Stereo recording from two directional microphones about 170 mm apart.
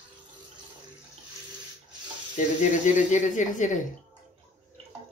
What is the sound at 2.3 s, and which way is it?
Speech, 45° left (ahead or behind).